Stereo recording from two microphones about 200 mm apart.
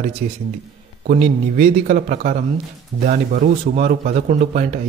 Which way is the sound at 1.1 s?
40° right (ahead or behind).